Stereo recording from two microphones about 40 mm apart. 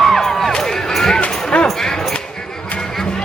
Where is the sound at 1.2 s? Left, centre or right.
Left.